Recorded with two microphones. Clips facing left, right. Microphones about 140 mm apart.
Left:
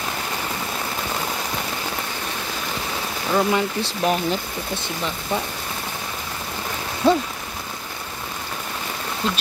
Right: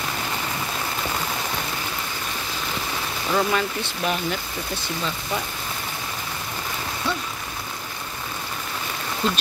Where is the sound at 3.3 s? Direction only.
20° left (ahead or behind).